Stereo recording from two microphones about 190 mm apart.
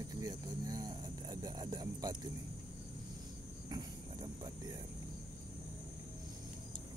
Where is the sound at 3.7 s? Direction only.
25° right (ahead or behind).